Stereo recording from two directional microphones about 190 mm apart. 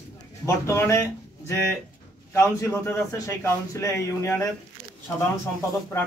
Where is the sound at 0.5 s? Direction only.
15° left (ahead or behind).